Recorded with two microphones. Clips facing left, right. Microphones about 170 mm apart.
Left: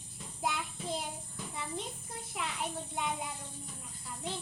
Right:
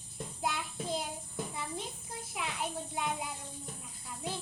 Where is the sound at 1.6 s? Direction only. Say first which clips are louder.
Even; 5° right (ahead or behind).